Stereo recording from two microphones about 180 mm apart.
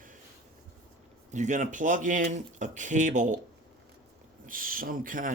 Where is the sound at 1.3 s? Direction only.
40° right (ahead or behind).